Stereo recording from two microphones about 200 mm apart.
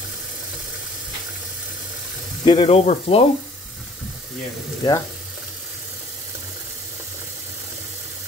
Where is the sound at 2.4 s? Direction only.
30° left (ahead or behind).